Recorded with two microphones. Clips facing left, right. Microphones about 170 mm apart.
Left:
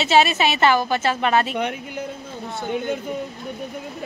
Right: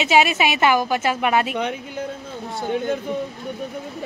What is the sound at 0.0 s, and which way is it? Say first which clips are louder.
Speech: even; 10° right (ahead or behind).